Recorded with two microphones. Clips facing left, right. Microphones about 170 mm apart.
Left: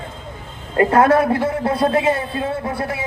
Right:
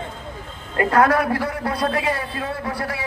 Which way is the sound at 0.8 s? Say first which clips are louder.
Left 4 dB; 25° left (ahead or behind).